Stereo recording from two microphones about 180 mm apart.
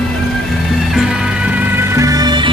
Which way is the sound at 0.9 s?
5° right (ahead or behind).